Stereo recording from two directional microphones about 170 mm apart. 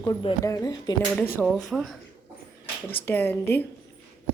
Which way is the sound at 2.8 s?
10° left (ahead or behind).